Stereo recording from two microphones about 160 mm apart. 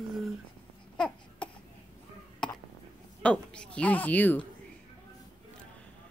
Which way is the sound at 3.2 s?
5° left (ahead or behind).